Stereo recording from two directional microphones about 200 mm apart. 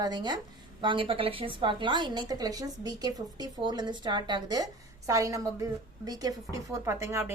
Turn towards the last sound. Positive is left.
turn(degrees=-15)  # may be behind; listen again after turning